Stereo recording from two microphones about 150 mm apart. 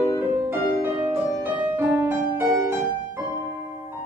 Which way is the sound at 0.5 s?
15° right (ahead or behind).